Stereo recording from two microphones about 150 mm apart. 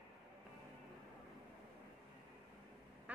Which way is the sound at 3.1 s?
10° right (ahead or behind).